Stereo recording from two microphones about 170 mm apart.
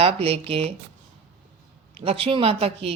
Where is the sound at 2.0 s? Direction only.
35° right (ahead or behind).